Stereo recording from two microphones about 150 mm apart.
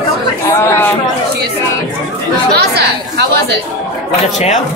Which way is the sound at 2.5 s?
90° right.